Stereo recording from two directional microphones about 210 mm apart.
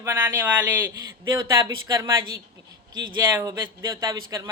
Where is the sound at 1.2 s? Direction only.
20° right (ahead or behind).